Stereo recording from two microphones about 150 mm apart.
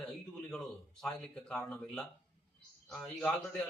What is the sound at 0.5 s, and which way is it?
Speech, 5° left (ahead or behind).